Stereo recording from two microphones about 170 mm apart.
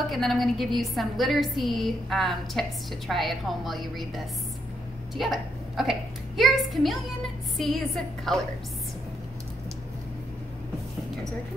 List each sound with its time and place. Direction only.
0.1 s a woman's voice: centre (ahead or behind)